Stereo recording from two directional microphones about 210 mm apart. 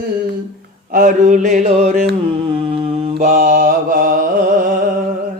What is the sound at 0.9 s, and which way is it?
Mantra, 40° right (ahead or behind).